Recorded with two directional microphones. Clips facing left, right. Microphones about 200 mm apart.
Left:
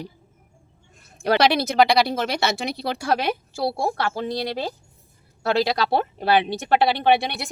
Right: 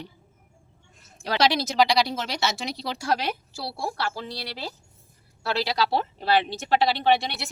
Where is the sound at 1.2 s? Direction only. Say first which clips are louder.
Left 5 dB; 60° left (ahead or behind).